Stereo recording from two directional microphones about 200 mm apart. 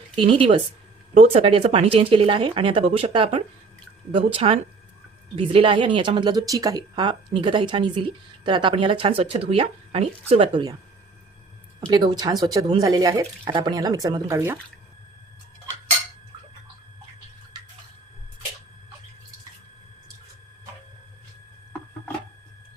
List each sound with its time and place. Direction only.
0.2 s speech: 25° right (ahead or behind)
11.9 s speech: 20° right (ahead or behind)